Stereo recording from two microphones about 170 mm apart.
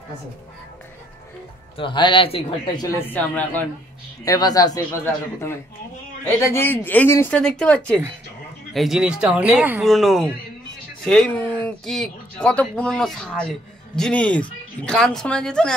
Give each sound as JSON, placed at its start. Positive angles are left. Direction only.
{"t": 1.8, "sound": "a man's voice", "side_deg": 30}
{"t": 2.8, "sound": "speech", "side_deg": 15}
{"t": 4.2, "sound": "a man's voice", "side_deg": 20}